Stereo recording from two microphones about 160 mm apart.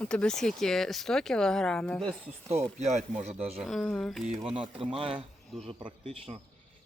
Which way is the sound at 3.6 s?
Centre (ahead or behind).